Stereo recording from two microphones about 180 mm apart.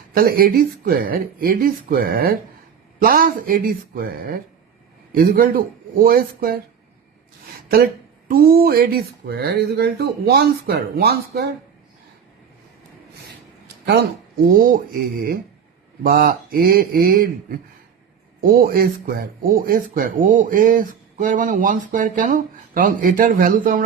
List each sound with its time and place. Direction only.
0.1 s speech: 55° right (ahead or behind)
8.3 s speech: 55° right (ahead or behind)
13.8 s speech: 65° right (ahead or behind)
16.0 s speech: 55° right (ahead or behind)
18.3 s speech: 55° right (ahead or behind)